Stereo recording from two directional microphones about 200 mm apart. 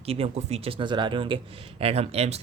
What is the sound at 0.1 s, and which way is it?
Speech, 30° right (ahead or behind).